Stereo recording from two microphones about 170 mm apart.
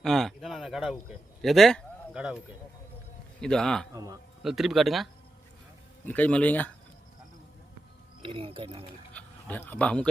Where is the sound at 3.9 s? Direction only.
20° right (ahead or behind).